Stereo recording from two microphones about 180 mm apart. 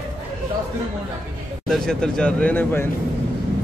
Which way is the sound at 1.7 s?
5° left (ahead or behind).